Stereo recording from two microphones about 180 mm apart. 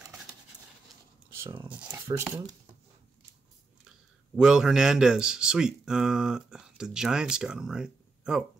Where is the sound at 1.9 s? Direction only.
15° right (ahead or behind).